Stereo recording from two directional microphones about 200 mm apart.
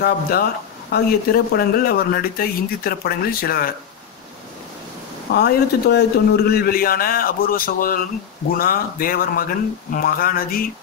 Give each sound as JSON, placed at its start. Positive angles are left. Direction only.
{"t": 0.8, "sound": "speech", "side_deg": 50}
{"t": 5.3, "sound": "speech", "side_deg": 55}